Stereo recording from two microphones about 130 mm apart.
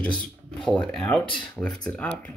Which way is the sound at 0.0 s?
10° left (ahead or behind).